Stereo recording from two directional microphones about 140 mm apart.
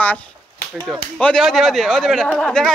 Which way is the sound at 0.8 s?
5° left (ahead or behind).